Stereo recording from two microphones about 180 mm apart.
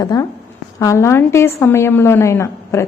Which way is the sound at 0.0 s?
20° left (ahead or behind).